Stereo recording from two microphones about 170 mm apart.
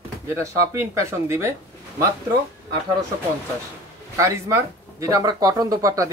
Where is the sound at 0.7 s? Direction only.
15° right (ahead or behind).